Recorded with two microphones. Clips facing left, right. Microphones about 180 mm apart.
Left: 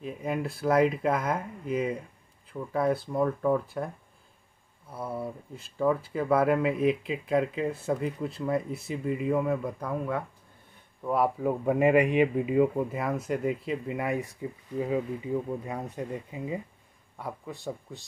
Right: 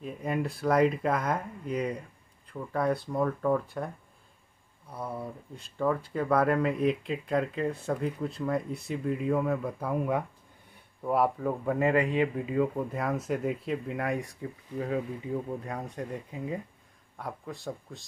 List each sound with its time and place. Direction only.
0.0 s speech: centre (ahead or behind)
11.1 s speech: centre (ahead or behind)
11.4 s speech: 15° left (ahead or behind)
12.7 s speech: centre (ahead or behind)